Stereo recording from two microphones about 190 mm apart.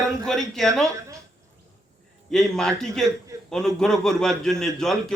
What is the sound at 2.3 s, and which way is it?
A man's voice, centre (ahead or behind).